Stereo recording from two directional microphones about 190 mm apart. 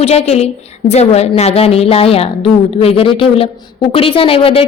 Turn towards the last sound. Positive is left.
turn(degrees=30)  # may be behind; listen again after turning